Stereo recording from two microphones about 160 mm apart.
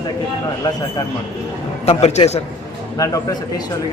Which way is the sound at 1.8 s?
45° left (ahead or behind).